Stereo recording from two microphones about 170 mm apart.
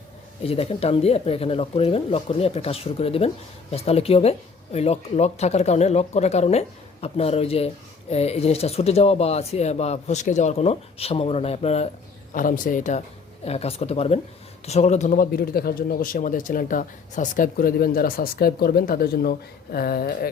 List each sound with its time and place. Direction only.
0.4 s speech: 35° left (ahead or behind)
12.3 s speech: 50° left (ahead or behind)
13.4 s a man's voice: 35° left (ahead or behind); by 20.3 s 65° left (ahead or behind)